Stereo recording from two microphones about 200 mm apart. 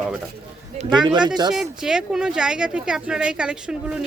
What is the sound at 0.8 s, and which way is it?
Speech, 25° right (ahead or behind).